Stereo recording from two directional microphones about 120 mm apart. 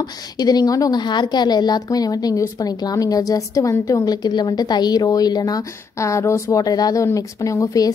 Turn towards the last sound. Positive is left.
turn(degrees=30)  # may be behind; listen again after turning